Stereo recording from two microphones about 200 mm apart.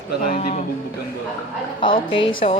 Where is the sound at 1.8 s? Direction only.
25° left (ahead or behind).